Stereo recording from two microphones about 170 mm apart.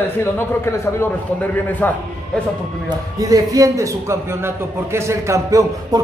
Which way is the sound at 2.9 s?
20° right (ahead or behind).